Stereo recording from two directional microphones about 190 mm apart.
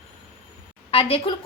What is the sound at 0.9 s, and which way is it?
Speech, 30° left (ahead or behind).